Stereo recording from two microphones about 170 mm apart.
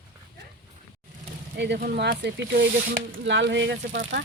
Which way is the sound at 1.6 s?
75° right (ahead or behind).